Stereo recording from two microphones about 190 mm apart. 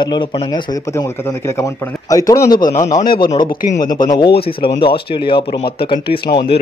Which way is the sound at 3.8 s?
20° left (ahead or behind).